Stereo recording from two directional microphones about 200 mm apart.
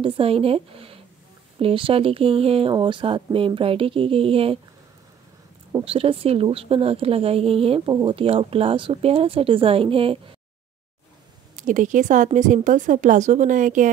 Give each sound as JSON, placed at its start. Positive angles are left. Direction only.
{"t": 0.0, "sound": "speech", "side_deg": -30}
{"t": 5.7, "sound": "speech", "side_deg": -25}
{"t": 11.5, "sound": "speech", "side_deg": -40}